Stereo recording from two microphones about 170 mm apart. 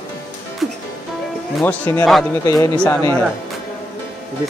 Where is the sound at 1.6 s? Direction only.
10° left (ahead or behind).